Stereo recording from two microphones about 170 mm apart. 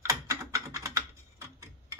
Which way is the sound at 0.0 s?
20° right (ahead or behind).